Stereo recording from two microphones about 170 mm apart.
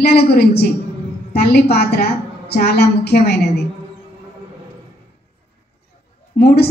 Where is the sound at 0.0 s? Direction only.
65° left (ahead or behind).